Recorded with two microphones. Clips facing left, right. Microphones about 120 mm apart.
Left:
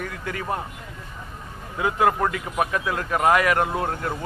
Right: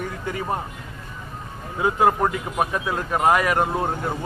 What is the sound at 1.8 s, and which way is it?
Speech, 30° right (ahead or behind).